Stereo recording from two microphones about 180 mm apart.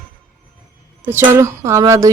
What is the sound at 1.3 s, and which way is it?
Speech, 15° right (ahead or behind).